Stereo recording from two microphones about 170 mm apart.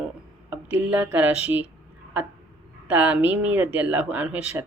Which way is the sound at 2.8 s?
10° right (ahead or behind).